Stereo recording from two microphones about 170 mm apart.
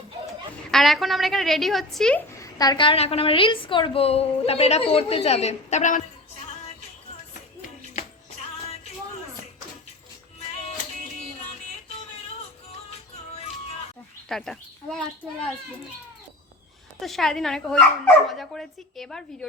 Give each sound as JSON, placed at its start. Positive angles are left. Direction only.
{"t": 0.7, "sound": "speech", "side_deg": 0}
{"t": 2.4, "sound": "a woman's voice", "side_deg": 25}
{"t": 14.3, "sound": "a child's voice", "side_deg": 0}
{"t": 17.0, "sound": "speech", "side_deg": 0}